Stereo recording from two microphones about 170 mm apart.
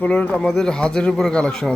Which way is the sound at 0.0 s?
10° left (ahead or behind).